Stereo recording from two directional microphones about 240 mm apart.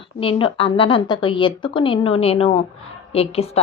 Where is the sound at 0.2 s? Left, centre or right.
Left.